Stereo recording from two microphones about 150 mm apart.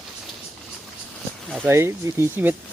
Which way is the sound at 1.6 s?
15° right (ahead or behind).